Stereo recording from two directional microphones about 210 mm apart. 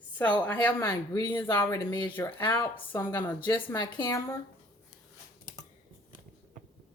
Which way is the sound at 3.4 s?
20° left (ahead or behind).